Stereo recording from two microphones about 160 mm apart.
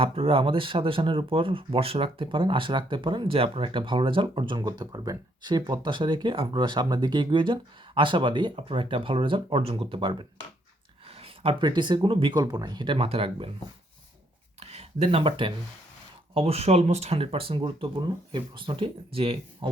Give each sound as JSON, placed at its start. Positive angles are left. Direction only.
{"t": 0.0, "sound": "speech", "side_deg": -35}
{"t": 14.6, "sound": "speech", "side_deg": -40}